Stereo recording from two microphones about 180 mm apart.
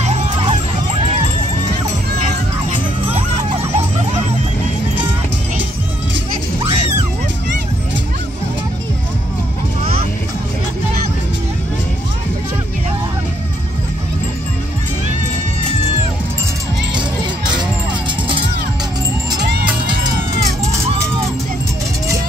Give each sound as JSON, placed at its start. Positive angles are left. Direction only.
{"t": 0.0, "sound": "music", "side_deg": -35}
{"t": 6.6, "sound": "music", "side_deg": -35}